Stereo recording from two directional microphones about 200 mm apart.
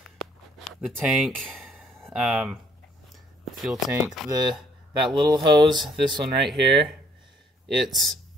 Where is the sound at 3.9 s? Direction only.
15° right (ahead or behind).